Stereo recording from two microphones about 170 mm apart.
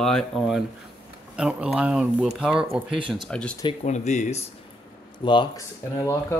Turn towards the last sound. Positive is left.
turn(degrees=15)  # may be behind; listen again after turning